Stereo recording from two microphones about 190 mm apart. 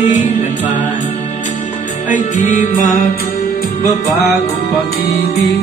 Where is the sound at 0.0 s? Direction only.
40° left (ahead or behind).